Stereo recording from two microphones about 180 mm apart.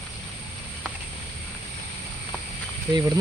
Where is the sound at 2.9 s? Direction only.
20° right (ahead or behind).